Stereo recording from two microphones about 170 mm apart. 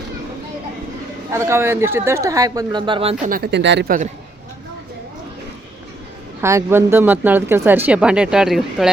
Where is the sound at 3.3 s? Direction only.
75° right (ahead or behind).